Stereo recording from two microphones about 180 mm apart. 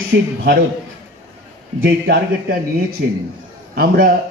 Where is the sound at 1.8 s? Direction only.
60° right (ahead or behind).